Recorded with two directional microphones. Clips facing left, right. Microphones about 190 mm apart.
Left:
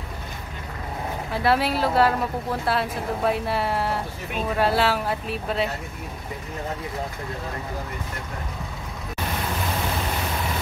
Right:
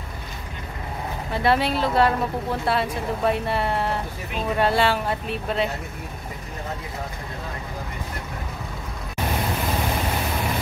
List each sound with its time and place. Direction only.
1.3 s speech: centre (ahead or behind)